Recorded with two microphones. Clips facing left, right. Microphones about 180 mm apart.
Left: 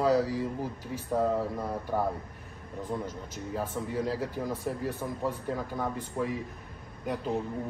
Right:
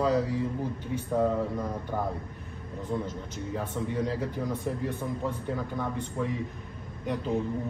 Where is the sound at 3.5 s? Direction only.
5° left (ahead or behind).